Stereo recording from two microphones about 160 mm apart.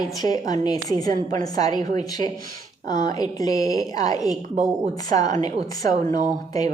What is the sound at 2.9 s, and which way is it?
A woman's voice, 25° left (ahead or behind).